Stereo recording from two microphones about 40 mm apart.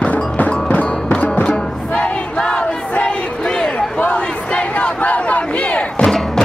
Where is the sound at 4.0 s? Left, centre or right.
Left.